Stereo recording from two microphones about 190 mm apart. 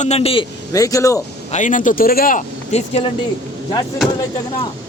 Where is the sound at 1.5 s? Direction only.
40° left (ahead or behind).